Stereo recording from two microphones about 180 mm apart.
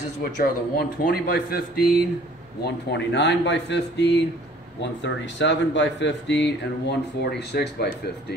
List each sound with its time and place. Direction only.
0.4 s speech: 55° left (ahead or behind)
2.6 s speech: 75° left (ahead or behind)